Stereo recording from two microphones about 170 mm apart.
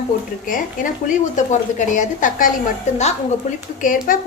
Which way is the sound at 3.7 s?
50° left (ahead or behind).